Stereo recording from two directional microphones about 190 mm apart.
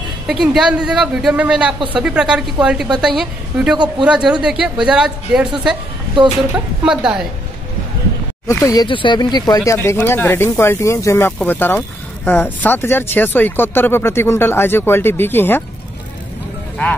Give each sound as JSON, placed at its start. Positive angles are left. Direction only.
{"t": 0.3, "sound": "speech", "side_deg": 0}
{"t": 8.5, "sound": "speech", "side_deg": 15}